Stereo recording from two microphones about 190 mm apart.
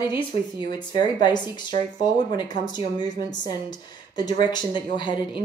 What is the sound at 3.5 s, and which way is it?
Speech, 20° left (ahead or behind).